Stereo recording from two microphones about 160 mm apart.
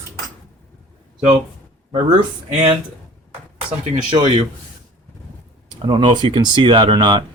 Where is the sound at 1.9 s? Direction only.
30° right (ahead or behind).